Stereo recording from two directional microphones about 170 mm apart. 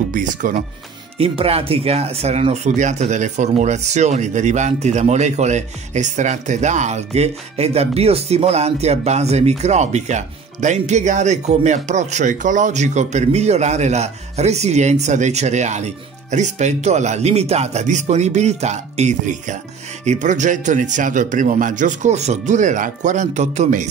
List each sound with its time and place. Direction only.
0.1 s a man's voice: 50° right (ahead or behind)
1.1 s a man's voice: 35° right (ahead or behind)